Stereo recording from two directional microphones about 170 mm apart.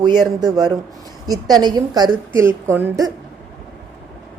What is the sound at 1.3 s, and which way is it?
A woman's voice, 25° right (ahead or behind).